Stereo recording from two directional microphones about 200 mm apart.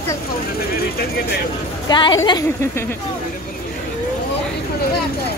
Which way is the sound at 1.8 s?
20° left (ahead or behind).